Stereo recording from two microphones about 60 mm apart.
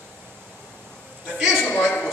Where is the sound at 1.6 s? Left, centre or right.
Left.